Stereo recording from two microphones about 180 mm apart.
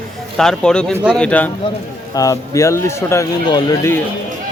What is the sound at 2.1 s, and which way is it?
Speech, 20° left (ahead or behind).